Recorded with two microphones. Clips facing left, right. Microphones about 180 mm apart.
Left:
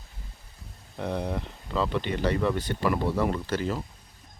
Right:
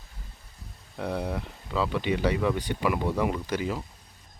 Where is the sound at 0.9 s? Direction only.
5° right (ahead or behind).